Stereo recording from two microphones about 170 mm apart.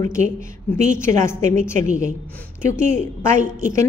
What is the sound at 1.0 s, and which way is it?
Speech, 45° right (ahead or behind).